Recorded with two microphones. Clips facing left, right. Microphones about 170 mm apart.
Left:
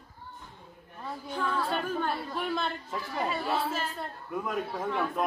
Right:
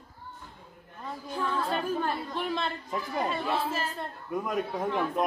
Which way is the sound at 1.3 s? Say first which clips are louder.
Right 1 dB; centre (ahead or behind).